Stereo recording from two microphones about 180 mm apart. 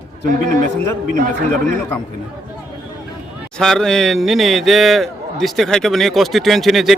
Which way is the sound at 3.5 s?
Centre (ahead or behind).